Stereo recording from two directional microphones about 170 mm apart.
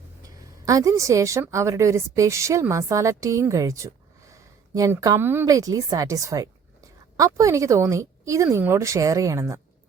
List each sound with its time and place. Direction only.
0.6 s a woman's voice: 20° right (ahead or behind)